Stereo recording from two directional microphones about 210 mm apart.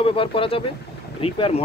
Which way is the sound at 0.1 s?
25° left (ahead or behind).